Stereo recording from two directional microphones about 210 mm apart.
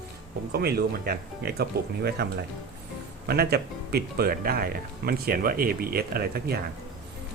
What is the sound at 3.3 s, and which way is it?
Speech, 50° right (ahead or behind).